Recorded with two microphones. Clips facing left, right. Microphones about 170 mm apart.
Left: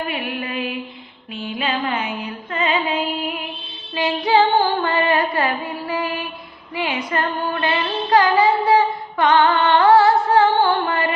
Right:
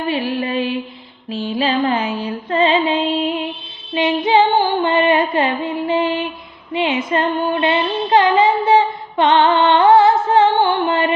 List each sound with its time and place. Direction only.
0.1 s music: 30° right (ahead or behind)
6.7 s female singing: 25° right (ahead or behind)
10.2 s music: 20° right (ahead or behind)